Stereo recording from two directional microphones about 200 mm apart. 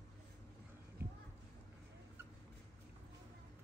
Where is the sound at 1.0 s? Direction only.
10° right (ahead or behind).